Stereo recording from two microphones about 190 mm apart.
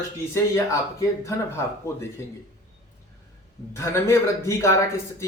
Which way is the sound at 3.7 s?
15° left (ahead or behind).